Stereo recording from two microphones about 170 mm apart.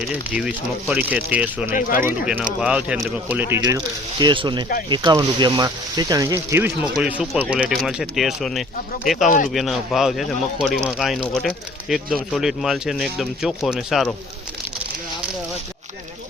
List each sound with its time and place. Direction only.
0.3 s speech: 5° right (ahead or behind)
4.2 s speech: 25° right (ahead or behind); by 14.1 s centre (ahead or behind)